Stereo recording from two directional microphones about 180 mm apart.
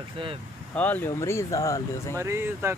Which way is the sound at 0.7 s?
10° left (ahead or behind).